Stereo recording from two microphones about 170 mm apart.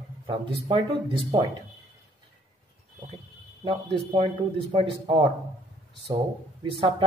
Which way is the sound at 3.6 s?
30° right (ahead or behind).